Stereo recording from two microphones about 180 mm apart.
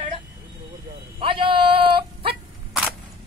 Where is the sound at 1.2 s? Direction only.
30° right (ahead or behind).